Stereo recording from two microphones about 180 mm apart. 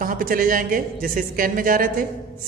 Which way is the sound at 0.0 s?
50° right (ahead or behind).